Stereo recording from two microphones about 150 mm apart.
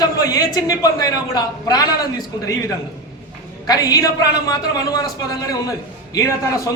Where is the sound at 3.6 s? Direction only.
25° left (ahead or behind).